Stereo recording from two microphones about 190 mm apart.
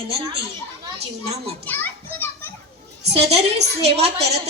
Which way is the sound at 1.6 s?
10° left (ahead or behind).